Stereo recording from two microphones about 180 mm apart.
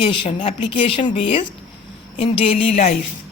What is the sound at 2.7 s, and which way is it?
Speech, 45° left (ahead or behind).